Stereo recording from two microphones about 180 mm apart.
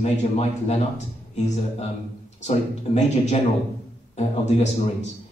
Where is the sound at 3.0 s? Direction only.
40° left (ahead or behind).